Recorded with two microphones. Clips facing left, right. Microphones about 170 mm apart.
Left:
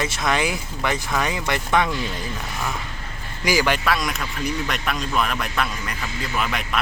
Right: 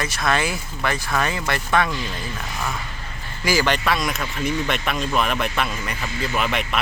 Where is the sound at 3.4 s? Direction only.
10° left (ahead or behind).